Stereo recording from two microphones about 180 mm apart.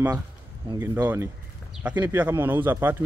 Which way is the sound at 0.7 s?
15° right (ahead or behind).